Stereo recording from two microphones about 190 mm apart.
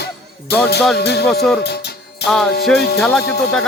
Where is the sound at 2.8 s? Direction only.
60° left (ahead or behind).